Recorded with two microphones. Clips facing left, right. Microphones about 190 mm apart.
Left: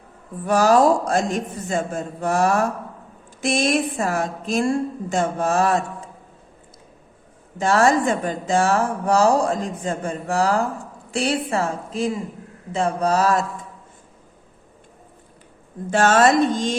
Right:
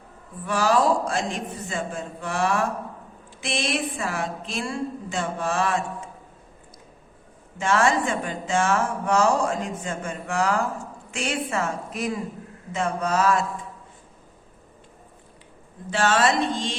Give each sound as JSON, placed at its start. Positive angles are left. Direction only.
{"t": 0.4, "sound": "a woman's voice", "side_deg": 45}
{"t": 7.6, "sound": "a woman's voice", "side_deg": 40}
{"t": 15.9, "sound": "a woman's voice", "side_deg": 45}